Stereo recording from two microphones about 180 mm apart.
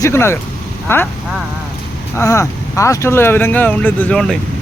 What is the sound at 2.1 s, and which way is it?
Speech, 15° left (ahead or behind).